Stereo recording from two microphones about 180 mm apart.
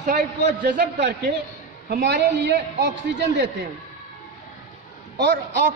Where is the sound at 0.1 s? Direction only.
65° right (ahead or behind).